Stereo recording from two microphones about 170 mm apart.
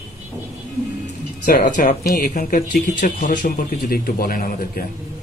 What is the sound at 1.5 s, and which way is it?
Speech, 50° left (ahead or behind).